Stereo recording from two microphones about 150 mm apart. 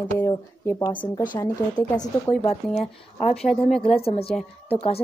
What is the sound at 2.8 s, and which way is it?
Speech, 45° left (ahead or behind).